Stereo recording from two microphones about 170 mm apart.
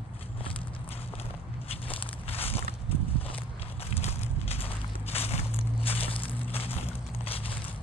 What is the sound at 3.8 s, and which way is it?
Crushing, 35° left (ahead or behind).